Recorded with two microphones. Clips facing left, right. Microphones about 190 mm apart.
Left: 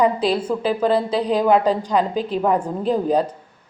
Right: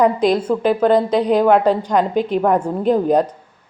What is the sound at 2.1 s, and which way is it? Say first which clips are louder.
Speech: right 5 dB; 35° left (ahead or behind).